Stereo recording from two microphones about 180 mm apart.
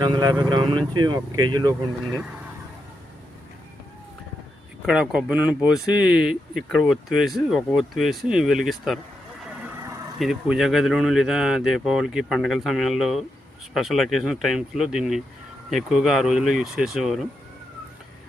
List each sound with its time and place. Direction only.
0.0 s speech: 25° right (ahead or behind)
4.9 s speech: 5° right (ahead or behind)
10.2 s speech: 5° right (ahead or behind)